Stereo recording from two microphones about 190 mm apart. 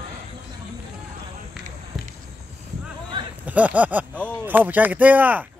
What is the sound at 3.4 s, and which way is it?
Speech, 10° right (ahead or behind).